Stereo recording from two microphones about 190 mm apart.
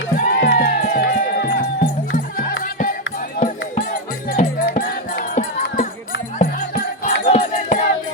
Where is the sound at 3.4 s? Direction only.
40° left (ahead or behind).